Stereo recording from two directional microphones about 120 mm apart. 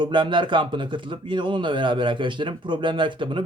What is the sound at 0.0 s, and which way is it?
Speech, 40° right (ahead or behind).